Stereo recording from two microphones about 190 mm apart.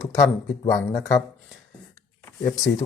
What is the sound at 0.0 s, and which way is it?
Speech, 20° left (ahead or behind).